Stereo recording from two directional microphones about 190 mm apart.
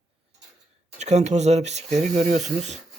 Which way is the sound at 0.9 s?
35° right (ahead or behind).